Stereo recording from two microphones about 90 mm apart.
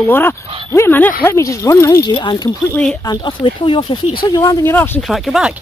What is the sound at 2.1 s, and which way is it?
Speech, 55° left (ahead or behind).